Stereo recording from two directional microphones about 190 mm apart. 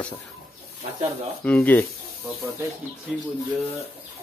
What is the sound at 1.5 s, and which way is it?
Speech, 10° left (ahead or behind).